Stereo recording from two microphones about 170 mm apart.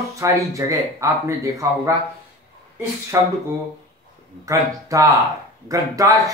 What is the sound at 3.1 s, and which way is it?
Speech, 15° right (ahead or behind).